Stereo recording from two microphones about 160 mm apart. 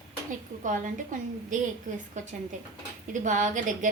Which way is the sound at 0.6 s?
55° right (ahead or behind).